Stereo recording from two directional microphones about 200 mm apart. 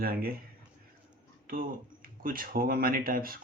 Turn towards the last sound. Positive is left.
turn(degrees=-45)  # may be behind; listen again after turning